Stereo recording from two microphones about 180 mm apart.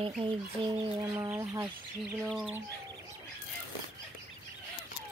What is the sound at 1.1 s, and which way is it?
Speech, 15° right (ahead or behind).